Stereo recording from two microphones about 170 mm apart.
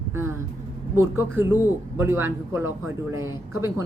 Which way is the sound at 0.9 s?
15° right (ahead or behind).